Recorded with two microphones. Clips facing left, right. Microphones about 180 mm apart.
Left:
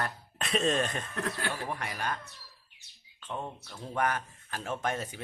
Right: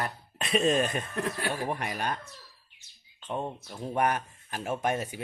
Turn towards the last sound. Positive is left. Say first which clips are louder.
# right 4 dB
turn(degrees=-15)  # may be behind; listen again after turning